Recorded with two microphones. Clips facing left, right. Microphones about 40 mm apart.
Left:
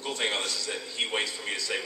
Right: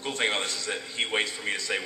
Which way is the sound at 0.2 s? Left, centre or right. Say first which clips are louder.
Right 3 dB; right.